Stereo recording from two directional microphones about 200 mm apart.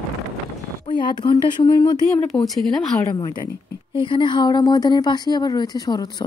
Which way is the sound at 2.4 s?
Centre (ahead or behind).